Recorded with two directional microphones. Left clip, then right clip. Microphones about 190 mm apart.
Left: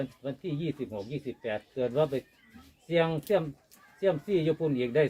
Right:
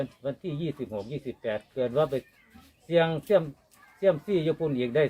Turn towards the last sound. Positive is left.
turn(degrees=-30)  # may be behind; listen again after turning